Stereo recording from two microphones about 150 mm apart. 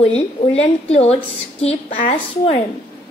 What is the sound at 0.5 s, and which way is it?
A woman's voice, 45° left (ahead or behind).